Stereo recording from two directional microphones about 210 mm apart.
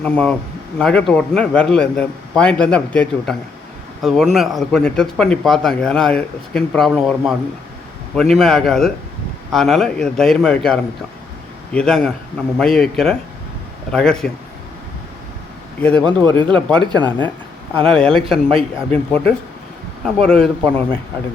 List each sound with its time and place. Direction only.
0.0 s speech: 5° left (ahead or behind)
15.8 s speech: 5° left (ahead or behind)
16.0 s speech: 20° right (ahead or behind)
17.7 s speech: 5° left (ahead or behind)